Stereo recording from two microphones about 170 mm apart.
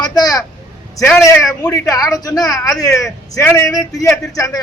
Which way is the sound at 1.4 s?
20° left (ahead or behind).